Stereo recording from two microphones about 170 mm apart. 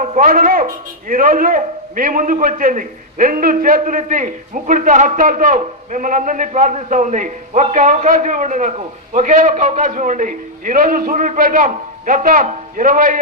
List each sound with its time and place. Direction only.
0.0 s a man's voice: 50° right (ahead or behind)